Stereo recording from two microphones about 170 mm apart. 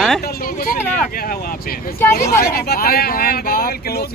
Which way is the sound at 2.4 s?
65° left (ahead or behind).